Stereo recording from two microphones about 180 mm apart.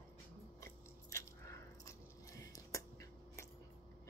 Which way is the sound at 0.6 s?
15° left (ahead or behind).